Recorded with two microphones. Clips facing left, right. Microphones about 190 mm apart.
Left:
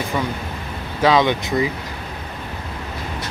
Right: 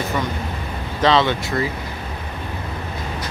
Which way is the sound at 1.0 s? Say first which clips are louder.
Left 1 dB; 15° left (ahead or behind).